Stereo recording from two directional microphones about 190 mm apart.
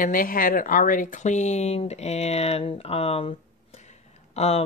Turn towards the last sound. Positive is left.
turn(degrees=35)  # may be behind; listen again after turning